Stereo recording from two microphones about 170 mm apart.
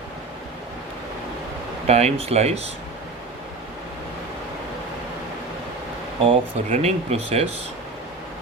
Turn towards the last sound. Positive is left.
turn(degrees=-35)  # may be behind; listen again after turning